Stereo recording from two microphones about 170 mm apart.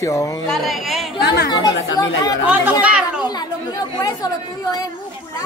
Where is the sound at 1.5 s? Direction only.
20° left (ahead or behind).